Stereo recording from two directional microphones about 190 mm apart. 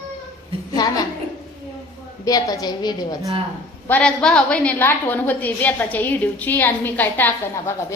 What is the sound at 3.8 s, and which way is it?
A woman's voice, 5° left (ahead or behind).